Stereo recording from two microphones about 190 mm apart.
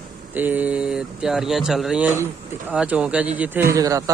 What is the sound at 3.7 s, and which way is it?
Speech, 20° right (ahead or behind).